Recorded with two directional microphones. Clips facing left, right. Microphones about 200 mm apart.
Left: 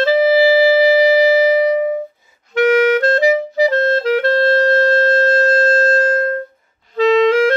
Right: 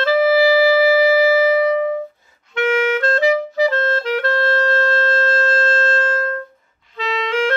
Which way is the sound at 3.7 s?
35° left (ahead or behind).